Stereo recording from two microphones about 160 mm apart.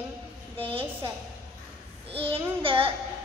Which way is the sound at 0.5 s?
35° right (ahead or behind).